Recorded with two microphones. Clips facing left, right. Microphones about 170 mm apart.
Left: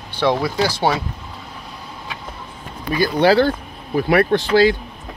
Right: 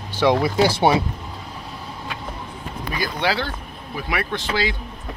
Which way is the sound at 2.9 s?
40° left (ahead or behind).